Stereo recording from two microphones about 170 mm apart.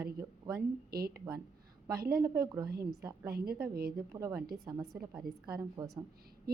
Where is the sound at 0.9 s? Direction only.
65° right (ahead or behind).